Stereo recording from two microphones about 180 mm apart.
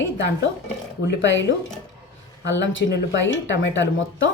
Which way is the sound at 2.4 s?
90° left.